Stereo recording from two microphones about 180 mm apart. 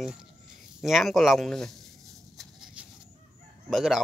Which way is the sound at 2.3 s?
Centre (ahead or behind).